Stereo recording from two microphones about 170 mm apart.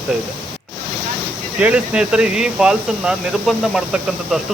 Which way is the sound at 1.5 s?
5° right (ahead or behind).